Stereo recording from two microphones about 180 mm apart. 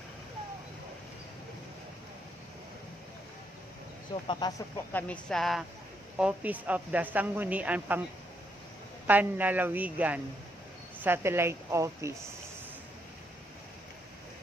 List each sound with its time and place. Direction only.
4.1 s speech: 25° left (ahead or behind)
4.9 s a woman's voice: 10° left (ahead or behind); by 8.0 s 10° right (ahead or behind)
9.0 s a woman's voice: 10° right (ahead or behind)